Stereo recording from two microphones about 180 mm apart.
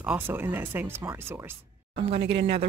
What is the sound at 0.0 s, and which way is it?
Speech, 10° right (ahead or behind).